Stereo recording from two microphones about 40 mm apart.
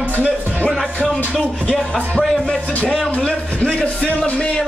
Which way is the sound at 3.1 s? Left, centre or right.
Centre.